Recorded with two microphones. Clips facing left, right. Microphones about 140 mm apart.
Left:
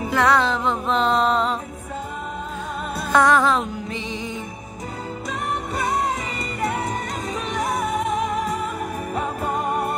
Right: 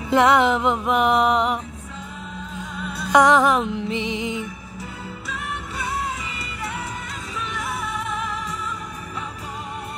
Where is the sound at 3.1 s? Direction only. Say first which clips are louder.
Right 2 dB; 15° right (ahead or behind).